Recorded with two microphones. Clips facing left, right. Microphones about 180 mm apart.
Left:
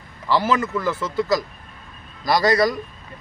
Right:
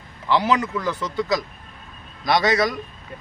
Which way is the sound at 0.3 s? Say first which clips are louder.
Even; centre (ahead or behind).